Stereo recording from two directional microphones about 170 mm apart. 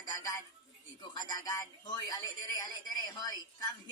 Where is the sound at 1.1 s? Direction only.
25° left (ahead or behind).